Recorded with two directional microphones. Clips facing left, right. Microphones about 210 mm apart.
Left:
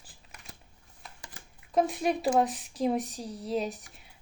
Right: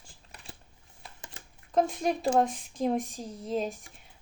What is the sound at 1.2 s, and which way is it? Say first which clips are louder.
Shuffling cards: right 3 dB; 25° right (ahead or behind).